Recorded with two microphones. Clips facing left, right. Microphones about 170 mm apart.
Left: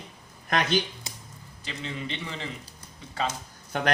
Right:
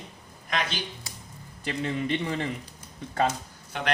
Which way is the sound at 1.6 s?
50° right (ahead or behind).